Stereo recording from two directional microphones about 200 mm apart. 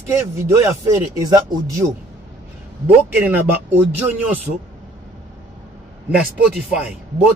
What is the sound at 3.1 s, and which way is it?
Speech, 10° right (ahead or behind).